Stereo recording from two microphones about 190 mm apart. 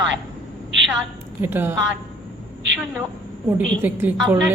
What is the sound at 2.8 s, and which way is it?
Speech, 10° right (ahead or behind).